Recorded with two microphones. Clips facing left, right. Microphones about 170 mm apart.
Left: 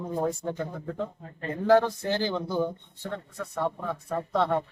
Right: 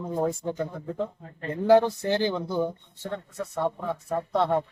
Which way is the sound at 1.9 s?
15° right (ahead or behind).